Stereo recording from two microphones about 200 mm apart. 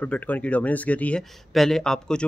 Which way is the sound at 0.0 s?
5° left (ahead or behind).